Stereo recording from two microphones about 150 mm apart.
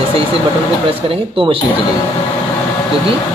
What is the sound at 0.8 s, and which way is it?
Speech, 35° right (ahead or behind).